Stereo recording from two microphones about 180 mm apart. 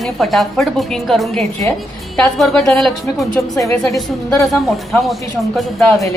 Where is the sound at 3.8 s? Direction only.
Centre (ahead or behind).